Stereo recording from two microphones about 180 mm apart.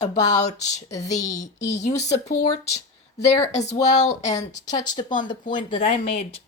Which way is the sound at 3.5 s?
40° left (ahead or behind).